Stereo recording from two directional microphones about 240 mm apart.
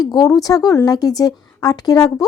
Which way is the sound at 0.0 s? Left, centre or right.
Centre.